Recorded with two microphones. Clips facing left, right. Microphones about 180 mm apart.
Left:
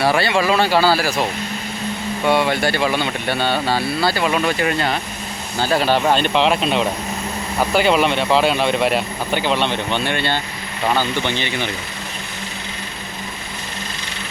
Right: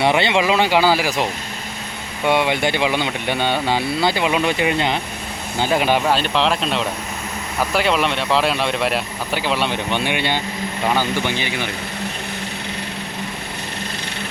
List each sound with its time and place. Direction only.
0.0 s speech: 20° right (ahead or behind)
6.1 s speech: centre (ahead or behind)